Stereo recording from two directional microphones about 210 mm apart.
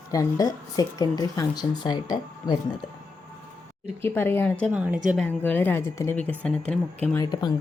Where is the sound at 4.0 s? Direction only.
10° left (ahead or behind).